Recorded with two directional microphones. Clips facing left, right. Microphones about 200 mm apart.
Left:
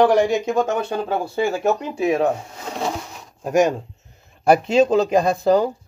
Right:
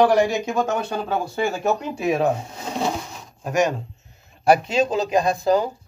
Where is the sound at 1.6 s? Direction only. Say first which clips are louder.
Left 3 dB; centre (ahead or behind).